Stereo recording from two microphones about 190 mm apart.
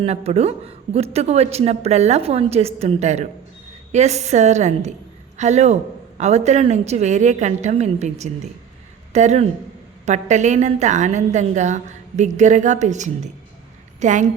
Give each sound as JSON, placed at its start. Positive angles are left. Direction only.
{"t": 0.0, "sound": "speech", "side_deg": -35}